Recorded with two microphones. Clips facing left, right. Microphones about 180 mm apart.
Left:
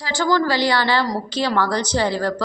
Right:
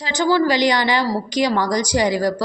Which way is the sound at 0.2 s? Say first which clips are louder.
Right 3 dB; 15° right (ahead or behind).